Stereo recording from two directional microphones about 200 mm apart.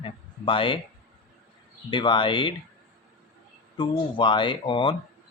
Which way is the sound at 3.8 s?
25° left (ahead or behind).